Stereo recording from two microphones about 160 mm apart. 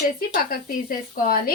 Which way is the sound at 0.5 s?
65° left (ahead or behind).